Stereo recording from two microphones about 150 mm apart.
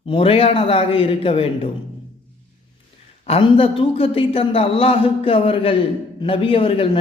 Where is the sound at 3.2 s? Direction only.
40° left (ahead or behind).